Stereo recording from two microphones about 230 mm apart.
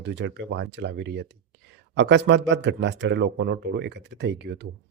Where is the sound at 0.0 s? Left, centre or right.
Right.